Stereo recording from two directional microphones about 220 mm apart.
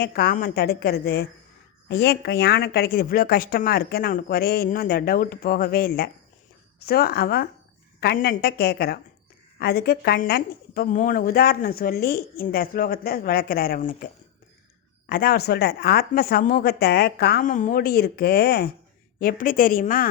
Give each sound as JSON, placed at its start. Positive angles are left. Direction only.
{"t": 0.0, "sound": "a woman's voice", "side_deg": 45}